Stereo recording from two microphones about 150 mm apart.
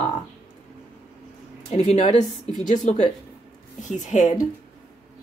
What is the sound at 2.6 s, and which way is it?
A woman's voice, 55° left (ahead or behind).